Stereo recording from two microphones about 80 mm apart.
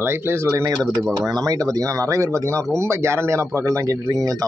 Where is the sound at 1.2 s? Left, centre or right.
Right.